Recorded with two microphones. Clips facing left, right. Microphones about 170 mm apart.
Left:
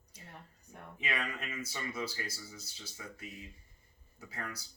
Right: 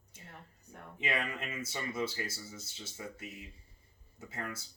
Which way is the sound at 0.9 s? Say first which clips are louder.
Right 3 dB; 25° right (ahead or behind).